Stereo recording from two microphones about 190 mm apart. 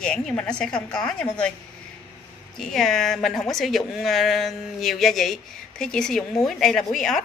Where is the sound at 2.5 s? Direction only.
Centre (ahead or behind).